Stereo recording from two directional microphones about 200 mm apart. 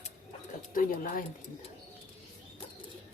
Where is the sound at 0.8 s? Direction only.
45° left (ahead or behind).